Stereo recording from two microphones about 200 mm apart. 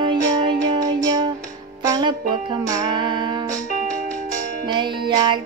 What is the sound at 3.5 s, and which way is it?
Music, 40° right (ahead or behind).